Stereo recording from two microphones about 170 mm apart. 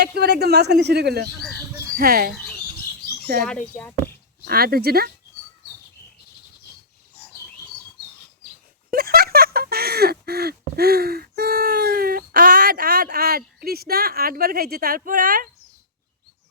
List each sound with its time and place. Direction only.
0.0 s speech: 70° right (ahead or behind)
2.3 s bird: 5° left (ahead or behind)
3.4 s speech: 5° left (ahead or behind)
4.4 s speech: 65° right (ahead or behind)
8.9 s speech: 60° right (ahead or behind)